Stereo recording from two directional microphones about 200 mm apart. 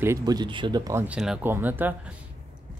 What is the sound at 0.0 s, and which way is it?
Speech, 15° right (ahead or behind).